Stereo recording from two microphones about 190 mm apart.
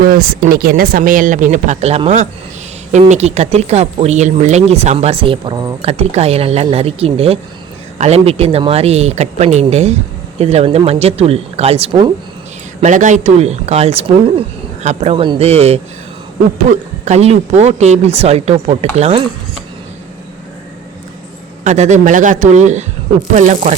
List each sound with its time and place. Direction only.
0.0 s speech: 50° right (ahead or behind); by 12.1 s 25° right (ahead or behind)
12.8 s speech: 40° right (ahead or behind)
21.6 s speech: 40° right (ahead or behind)